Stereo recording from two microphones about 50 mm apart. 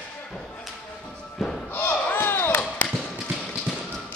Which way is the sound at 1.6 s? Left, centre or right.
Left.